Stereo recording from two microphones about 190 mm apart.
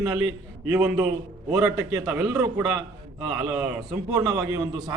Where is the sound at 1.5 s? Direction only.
15° right (ahead or behind).